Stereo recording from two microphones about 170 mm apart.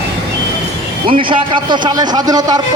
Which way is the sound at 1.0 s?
30° right (ahead or behind).